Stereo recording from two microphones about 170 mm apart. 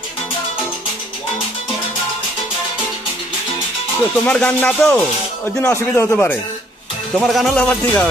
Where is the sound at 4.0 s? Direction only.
10° left (ahead or behind).